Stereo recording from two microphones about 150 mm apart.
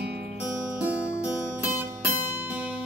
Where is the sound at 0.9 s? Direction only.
15° left (ahead or behind).